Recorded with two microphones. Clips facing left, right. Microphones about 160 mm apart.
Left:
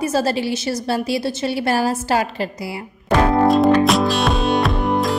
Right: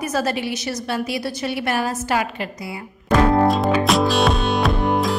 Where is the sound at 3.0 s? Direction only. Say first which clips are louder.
Left 1 dB; centre (ahead or behind).